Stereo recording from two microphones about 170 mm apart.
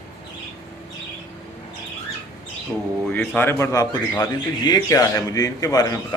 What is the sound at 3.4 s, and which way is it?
A man's voice, 15° left (ahead or behind).